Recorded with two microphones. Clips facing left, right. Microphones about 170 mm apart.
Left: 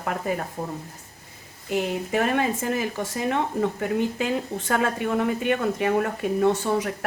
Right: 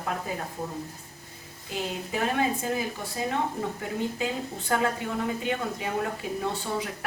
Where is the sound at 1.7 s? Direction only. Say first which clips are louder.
Left 7 dB; 65° left (ahead or behind).